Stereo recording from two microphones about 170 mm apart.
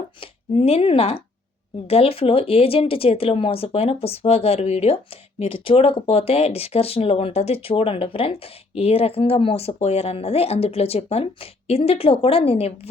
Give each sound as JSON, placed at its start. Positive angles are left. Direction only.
{"t": 0.2, "sound": "speech", "side_deg": 35}